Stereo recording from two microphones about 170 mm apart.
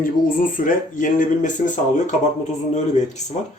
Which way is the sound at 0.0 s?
50° left (ahead or behind).